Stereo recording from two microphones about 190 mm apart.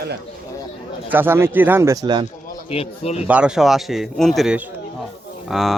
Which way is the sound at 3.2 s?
5° right (ahead or behind).